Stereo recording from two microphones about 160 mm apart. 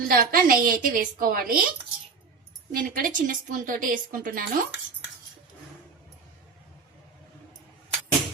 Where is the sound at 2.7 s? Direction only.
60° right (ahead or behind).